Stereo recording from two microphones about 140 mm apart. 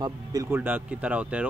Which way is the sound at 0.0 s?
25° right (ahead or behind).